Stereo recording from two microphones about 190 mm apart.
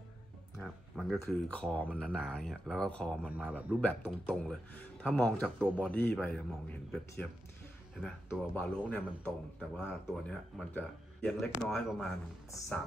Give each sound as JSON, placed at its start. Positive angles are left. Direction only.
{"t": 0.6, "sound": "a man's voice", "side_deg": 0}
{"t": 3.3, "sound": "speech", "side_deg": -5}
{"t": 3.8, "sound": "a man's voice", "side_deg": 10}